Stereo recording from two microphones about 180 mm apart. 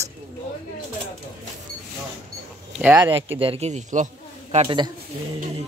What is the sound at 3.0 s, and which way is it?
Speech, 30° right (ahead or behind).